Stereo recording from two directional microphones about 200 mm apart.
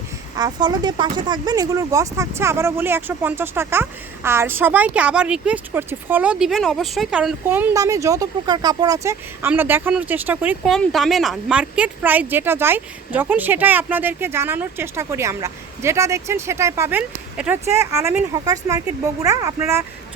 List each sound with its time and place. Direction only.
0.3 s speech: 20° right (ahead or behind)